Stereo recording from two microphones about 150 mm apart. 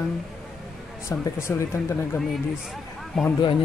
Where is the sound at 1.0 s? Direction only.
15° left (ahead or behind).